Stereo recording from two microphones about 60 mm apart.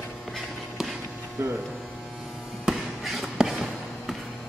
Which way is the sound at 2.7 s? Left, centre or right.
Centre.